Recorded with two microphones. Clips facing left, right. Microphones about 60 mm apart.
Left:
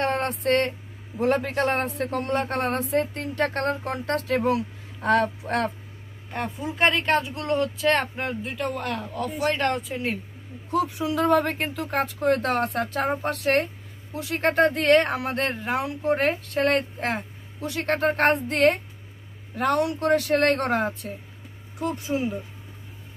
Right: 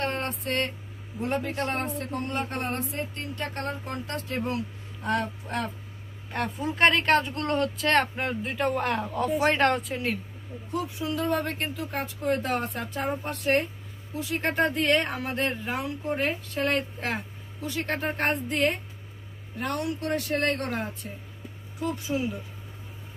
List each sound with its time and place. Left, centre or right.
0.0 s a sound: left
0.5 s speech: left
1.2 s speech: left
6.3 s speech: centre
8.8 s speech: centre
9.7 s speech: centre
10.7 s speech: left
13.2 s speech: left
14.1 s speech: left
15.8 s speech: left
17.6 s speech: left
19.5 s speech: left
21.7 s speech: left
22.1 s speech: left